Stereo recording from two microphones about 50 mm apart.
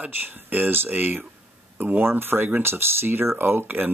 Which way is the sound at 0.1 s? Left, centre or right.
Right.